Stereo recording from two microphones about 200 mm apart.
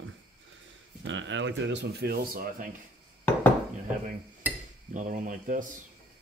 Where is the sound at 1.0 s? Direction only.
65° right (ahead or behind); by 2.6 s 50° right (ahead or behind).